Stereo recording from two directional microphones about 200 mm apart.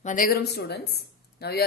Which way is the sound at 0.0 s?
45° left (ahead or behind).